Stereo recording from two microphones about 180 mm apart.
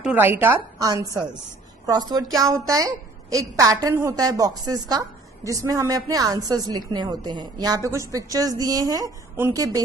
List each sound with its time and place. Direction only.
0.0 s a woman's voice: 10° right (ahead or behind)